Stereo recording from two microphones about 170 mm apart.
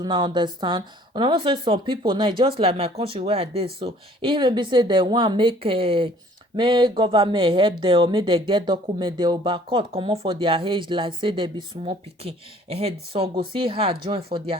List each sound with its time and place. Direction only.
0.0 s speech: 25° right (ahead or behind)